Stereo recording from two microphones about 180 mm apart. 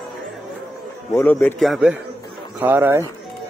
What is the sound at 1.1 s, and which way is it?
Speech, 10° left (ahead or behind).